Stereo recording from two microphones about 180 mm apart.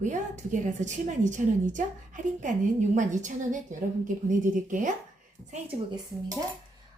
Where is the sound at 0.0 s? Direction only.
45° right (ahead or behind).